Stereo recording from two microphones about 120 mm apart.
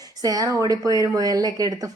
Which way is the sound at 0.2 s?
30° right (ahead or behind).